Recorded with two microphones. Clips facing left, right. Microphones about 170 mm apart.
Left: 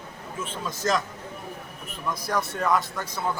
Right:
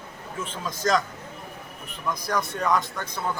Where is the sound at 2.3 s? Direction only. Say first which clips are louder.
Even; 5° left (ahead or behind).